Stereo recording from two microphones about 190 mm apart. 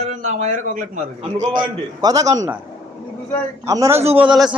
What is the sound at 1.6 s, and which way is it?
Speech, 20° right (ahead or behind).